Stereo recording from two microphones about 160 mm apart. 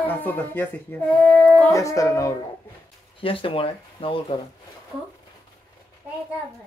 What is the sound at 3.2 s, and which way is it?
Speech, 35° left (ahead or behind).